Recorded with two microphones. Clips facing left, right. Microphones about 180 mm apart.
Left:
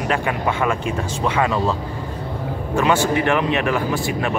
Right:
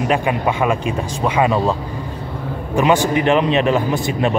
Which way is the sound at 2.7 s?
15° right (ahead or behind).